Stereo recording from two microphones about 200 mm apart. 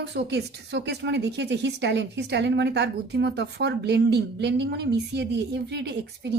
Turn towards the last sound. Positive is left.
turn(degrees=-60)  # may be behind; listen again after turning